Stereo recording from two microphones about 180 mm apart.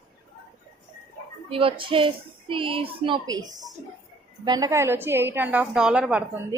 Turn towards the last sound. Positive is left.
turn(degrees=-5)  # may be behind; listen again after turning